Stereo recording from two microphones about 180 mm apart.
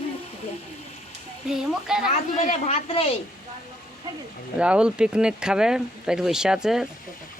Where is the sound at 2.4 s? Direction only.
40° left (ahead or behind).